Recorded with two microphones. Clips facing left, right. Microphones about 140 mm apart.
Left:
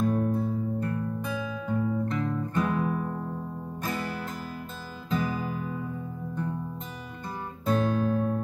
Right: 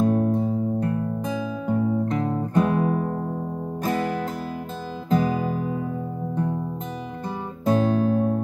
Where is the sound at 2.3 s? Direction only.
35° right (ahead or behind).